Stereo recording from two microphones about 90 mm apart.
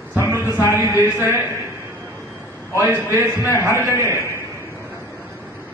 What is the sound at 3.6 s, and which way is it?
Speech, 30° right (ahead or behind).